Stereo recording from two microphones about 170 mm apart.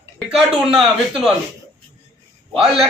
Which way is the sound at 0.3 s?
Centre (ahead or behind).